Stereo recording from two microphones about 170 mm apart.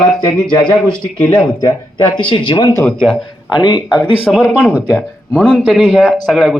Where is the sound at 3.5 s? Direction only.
25° left (ahead or behind).